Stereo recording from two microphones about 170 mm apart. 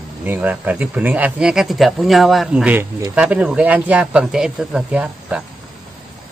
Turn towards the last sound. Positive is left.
turn(degrees=-5)  # may be behind; listen again after turning